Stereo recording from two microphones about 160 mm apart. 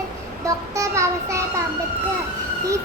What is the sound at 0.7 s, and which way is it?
Child singing, 20° right (ahead or behind).